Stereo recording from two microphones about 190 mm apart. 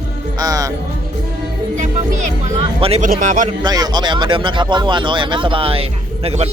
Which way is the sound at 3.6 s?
20° right (ahead or behind).